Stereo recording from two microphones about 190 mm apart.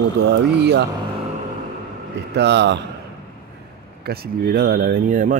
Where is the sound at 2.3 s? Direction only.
65° right (ahead or behind).